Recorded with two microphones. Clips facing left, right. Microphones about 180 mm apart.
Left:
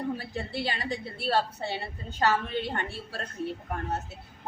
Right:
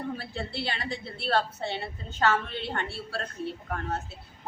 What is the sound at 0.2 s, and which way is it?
A woman's voice, 15° left (ahead or behind).